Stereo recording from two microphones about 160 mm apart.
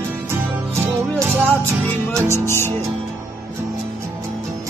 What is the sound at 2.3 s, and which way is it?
Music, 15° left (ahead or behind).